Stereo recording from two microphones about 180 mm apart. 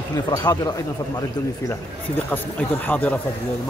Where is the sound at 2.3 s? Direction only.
10° left (ahead or behind).